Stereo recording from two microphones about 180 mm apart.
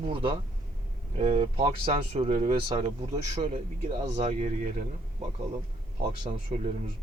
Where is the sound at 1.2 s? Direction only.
35° right (ahead or behind).